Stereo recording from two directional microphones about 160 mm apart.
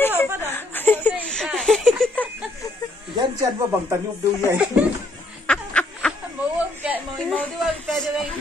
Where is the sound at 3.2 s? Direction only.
25° right (ahead or behind).